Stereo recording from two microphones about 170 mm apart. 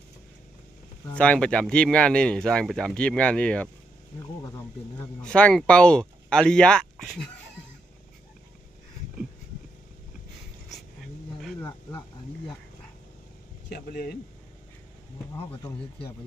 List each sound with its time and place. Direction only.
1.1 s speech: 5° left (ahead or behind)
5.2 s speech: 5° left (ahead or behind)
10.7 s a sound: centre (ahead or behind)
13.7 s speech: 70° left (ahead or behind)